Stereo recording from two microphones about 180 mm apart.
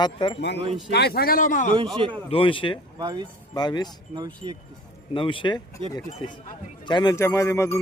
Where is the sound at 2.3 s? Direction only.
30° left (ahead or behind).